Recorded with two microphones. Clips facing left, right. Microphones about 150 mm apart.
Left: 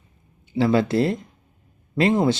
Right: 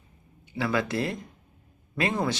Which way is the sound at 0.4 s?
30° left (ahead or behind).